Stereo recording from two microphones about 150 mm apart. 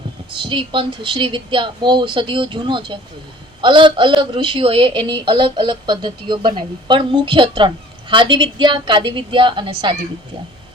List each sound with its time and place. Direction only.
0.3 s a woman's voice: 35° right (ahead or behind)